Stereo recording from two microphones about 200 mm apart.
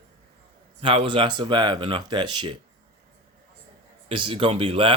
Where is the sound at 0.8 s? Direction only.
25° right (ahead or behind).